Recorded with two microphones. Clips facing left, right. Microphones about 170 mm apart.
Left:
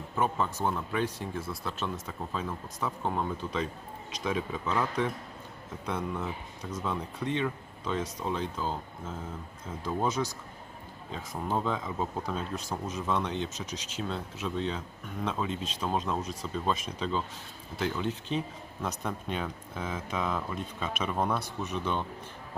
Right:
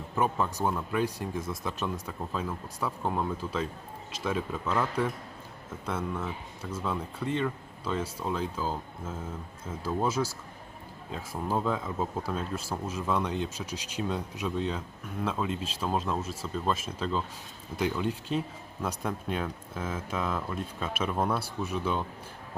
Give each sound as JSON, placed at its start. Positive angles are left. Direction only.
{"t": 0.2, "sound": "speech", "side_deg": -5}